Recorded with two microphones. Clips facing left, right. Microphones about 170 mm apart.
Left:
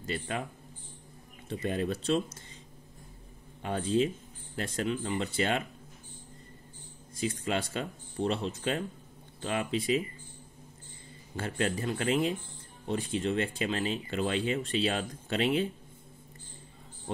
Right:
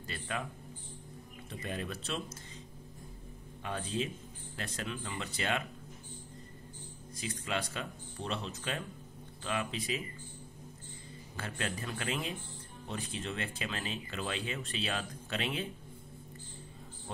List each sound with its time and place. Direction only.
0.0 s speech: 30° left (ahead or behind)
1.5 s speech: 30° left (ahead or behind)
3.6 s speech: 35° left (ahead or behind)
7.2 s speech: 30° left (ahead or behind)
11.3 s speech: 30° left (ahead or behind)